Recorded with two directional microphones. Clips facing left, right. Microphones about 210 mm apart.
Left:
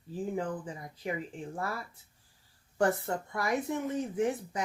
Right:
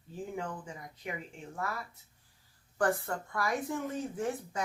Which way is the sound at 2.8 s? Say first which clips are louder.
Left 2 dB; 20° left (ahead or behind).